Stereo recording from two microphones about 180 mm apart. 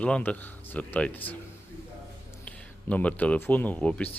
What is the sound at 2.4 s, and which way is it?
Speech, 10° left (ahead or behind).